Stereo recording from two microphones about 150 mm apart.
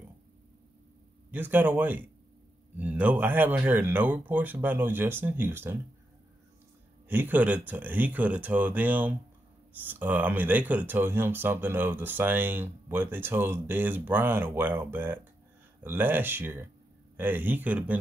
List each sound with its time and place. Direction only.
1.3 s speech: 10° right (ahead or behind)
7.1 s speech: 10° right (ahead or behind)